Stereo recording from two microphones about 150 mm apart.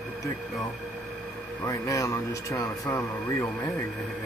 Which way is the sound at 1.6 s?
20° left (ahead or behind).